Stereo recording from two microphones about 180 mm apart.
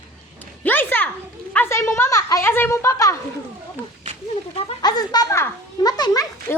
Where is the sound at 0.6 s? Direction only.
10° left (ahead or behind).